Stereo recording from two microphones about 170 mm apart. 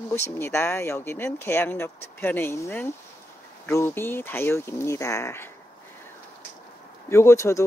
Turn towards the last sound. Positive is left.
turn(degrees=15)  # may be behind; listen again after turning